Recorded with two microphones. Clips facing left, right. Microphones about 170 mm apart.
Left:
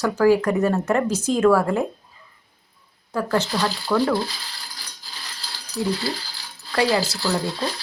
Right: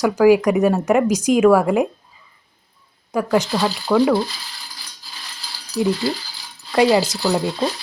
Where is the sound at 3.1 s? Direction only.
15° right (ahead or behind).